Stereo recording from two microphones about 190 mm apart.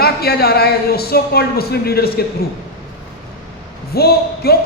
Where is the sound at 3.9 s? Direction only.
55° left (ahead or behind).